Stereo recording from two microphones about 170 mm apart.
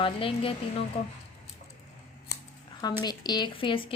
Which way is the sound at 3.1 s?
25° left (ahead or behind).